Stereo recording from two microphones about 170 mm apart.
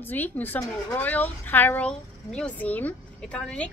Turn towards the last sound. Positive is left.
turn(degrees=5)  # may be behind; listen again after turning